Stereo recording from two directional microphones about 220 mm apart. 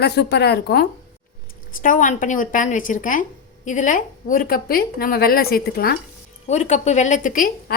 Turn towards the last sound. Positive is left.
turn(degrees=35)  # may be behind; listen again after turning